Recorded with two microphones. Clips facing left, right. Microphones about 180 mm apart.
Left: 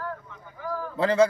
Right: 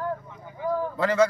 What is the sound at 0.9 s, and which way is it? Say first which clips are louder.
Speech: left 3 dB; 30° left (ahead or behind).